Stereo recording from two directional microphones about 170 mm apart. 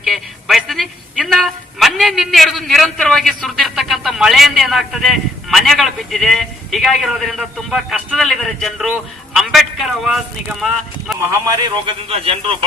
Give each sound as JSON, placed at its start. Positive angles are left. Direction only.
{"t": 0.0, "sound": "a man's voice", "side_deg": 0}
{"t": 11.3, "sound": "a man's voice", "side_deg": -25}